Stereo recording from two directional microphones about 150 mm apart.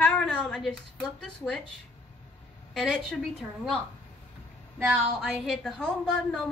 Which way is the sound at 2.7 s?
Centre (ahead or behind).